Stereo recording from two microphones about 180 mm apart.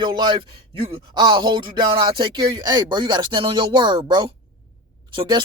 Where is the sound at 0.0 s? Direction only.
25° right (ahead or behind).